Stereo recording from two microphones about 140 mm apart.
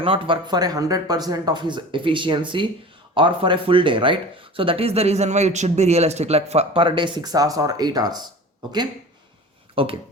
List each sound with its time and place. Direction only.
0.0 s speech: 40° right (ahead or behind)
9.8 s speech: 40° right (ahead or behind)